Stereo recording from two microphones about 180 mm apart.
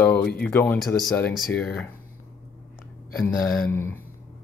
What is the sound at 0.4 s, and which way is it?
Speech, 10° left (ahead or behind).